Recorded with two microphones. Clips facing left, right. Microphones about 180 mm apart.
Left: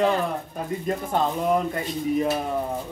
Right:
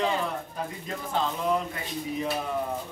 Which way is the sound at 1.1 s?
50° left (ahead or behind).